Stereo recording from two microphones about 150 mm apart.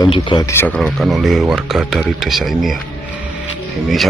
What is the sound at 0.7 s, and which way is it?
Speech, centre (ahead or behind).